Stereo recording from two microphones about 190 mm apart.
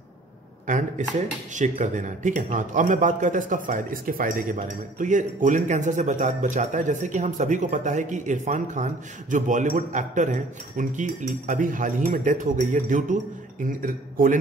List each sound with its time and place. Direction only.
0.7 s a man's voice: 40° right (ahead or behind)